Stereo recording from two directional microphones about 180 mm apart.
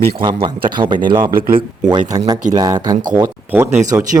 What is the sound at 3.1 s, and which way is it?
Speech, 10° right (ahead or behind).